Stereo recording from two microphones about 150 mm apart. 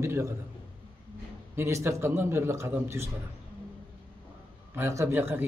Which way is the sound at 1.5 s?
20° right (ahead or behind).